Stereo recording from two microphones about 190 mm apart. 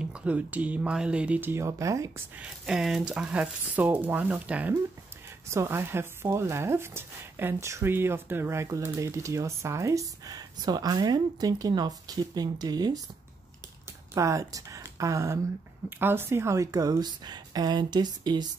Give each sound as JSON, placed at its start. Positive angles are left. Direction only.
{"t": 0.0, "sound": "speech", "side_deg": -5}
{"t": 2.4, "sound": "speech", "side_deg": 0}
{"t": 14.1, "sound": "a woman's voice", "side_deg": -15}